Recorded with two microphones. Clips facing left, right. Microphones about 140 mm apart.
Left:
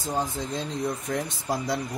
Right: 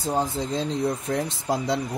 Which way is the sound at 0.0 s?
30° right (ahead or behind).